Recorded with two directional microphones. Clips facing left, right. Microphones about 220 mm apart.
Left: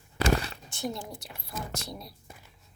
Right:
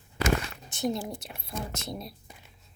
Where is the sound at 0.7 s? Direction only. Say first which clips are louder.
Right 5 dB; 20° right (ahead or behind).